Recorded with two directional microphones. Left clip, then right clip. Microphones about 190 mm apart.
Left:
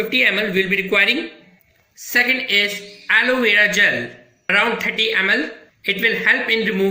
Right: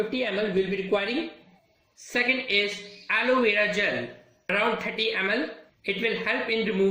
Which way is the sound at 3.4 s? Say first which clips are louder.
Left 9 dB; centre (ahead or behind).